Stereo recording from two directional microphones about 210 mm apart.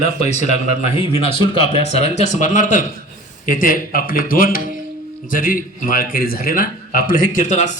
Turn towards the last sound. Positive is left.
turn(degrees=35)  # may be behind; listen again after turning